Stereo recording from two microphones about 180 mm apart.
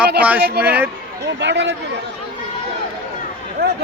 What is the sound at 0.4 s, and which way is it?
Speech, 60° right (ahead or behind).